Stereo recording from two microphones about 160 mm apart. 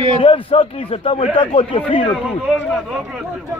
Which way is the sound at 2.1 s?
Centre (ahead or behind).